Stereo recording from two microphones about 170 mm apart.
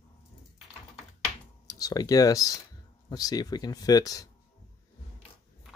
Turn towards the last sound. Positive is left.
turn(degrees=20)  # may be behind; listen again after turning